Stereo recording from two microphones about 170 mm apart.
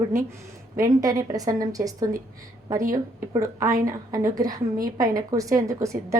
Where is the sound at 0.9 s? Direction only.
20° right (ahead or behind).